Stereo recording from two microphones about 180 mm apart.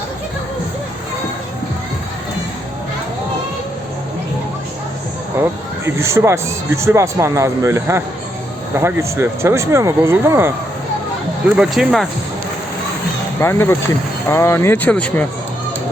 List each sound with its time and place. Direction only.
5.8 s speech: 15° right (ahead or behind)
11.5 s speech: 5° right (ahead or behind)
13.4 s speech: 15° left (ahead or behind)